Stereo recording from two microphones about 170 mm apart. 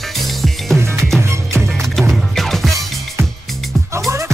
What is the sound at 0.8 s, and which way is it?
Music, 15° right (ahead or behind).